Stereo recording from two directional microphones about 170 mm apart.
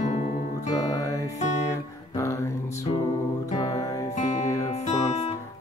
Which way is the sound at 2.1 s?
15° left (ahead or behind).